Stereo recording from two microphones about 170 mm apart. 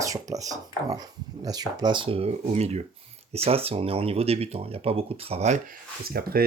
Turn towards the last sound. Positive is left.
turn(degrees=-60)  # may be behind; listen again after turning